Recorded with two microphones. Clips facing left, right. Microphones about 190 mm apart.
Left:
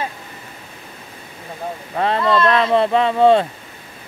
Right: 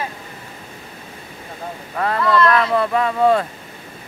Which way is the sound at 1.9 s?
25° left (ahead or behind).